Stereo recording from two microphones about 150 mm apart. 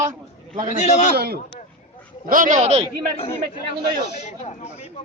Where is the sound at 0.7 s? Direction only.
50° left (ahead or behind).